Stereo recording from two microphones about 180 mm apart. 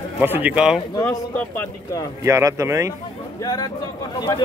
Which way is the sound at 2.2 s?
15° right (ahead or behind).